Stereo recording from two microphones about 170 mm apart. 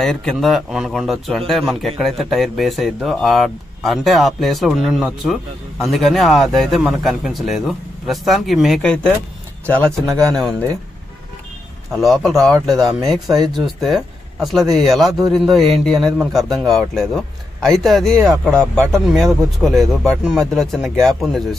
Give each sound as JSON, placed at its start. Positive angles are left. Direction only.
{"t": 0.0, "sound": "speech", "side_deg": 5}
{"t": 10.1, "sound": "speech", "side_deg": -20}
{"t": 11.9, "sound": "speech", "side_deg": 0}